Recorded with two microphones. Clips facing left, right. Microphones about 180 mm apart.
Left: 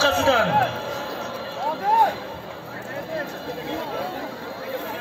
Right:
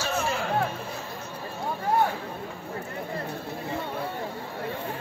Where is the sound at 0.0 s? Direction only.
90° left.